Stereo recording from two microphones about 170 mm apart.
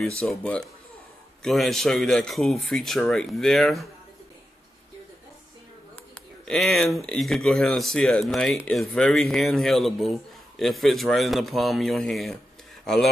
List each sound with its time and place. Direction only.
0.0 s a man's voice: 5° left (ahead or behind)
6.4 s a man's voice: centre (ahead or behind)